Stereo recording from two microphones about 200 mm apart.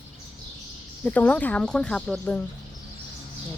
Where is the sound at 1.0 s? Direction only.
5° left (ahead or behind).